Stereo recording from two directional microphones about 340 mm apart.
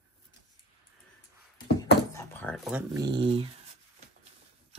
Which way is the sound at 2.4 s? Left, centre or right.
Centre.